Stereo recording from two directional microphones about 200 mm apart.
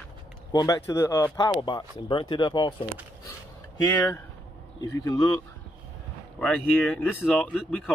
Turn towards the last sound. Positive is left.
turn(degrees=0)  # may be behind; listen again after turning